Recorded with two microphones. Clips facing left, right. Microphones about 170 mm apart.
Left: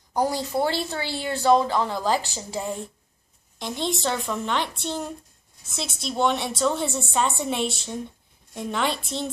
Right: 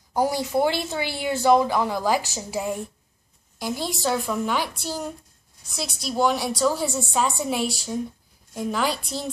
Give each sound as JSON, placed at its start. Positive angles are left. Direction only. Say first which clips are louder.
{"t": 0.2, "sound": "a woman's voice", "louder": "right 2 dB", "side_deg": -10}